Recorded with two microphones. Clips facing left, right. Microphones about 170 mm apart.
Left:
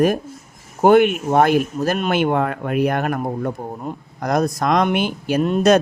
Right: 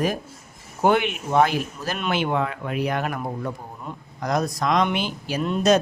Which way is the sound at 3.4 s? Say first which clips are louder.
Left 7 dB; 40° left (ahead or behind).